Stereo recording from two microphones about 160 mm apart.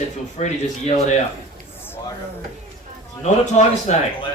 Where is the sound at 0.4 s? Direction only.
45° left (ahead or behind).